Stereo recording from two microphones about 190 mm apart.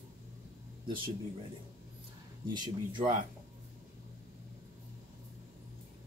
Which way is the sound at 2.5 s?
25° right (ahead or behind).